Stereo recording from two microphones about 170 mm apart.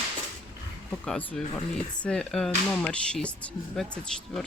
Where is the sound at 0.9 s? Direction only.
5° left (ahead or behind).